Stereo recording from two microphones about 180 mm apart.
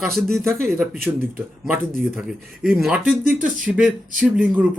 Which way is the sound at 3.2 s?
50° right (ahead or behind).